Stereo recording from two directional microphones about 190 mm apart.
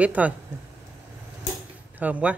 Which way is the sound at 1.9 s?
10° right (ahead or behind).